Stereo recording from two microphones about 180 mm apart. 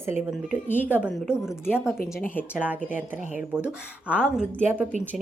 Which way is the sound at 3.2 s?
45° left (ahead or behind).